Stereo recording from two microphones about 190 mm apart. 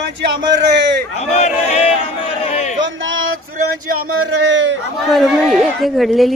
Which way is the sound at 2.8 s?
80° right.